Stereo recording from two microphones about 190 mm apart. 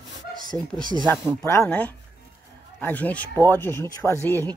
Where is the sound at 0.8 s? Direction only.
25° right (ahead or behind).